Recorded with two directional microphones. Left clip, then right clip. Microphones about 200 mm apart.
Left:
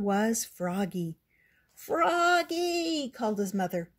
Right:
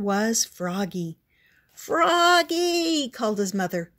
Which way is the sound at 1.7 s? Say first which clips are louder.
Right 6 dB; 15° right (ahead or behind).